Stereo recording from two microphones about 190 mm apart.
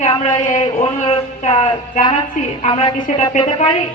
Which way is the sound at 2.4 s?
40° left (ahead or behind).